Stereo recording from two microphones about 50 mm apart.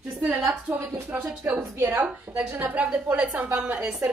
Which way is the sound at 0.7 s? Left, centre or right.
Right.